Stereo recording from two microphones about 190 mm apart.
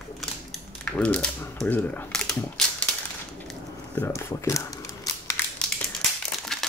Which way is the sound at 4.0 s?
15° left (ahead or behind).